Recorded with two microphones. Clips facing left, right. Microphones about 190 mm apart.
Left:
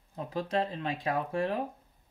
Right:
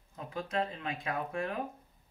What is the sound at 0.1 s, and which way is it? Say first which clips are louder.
Speech: left 5 dB; 35° left (ahead or behind).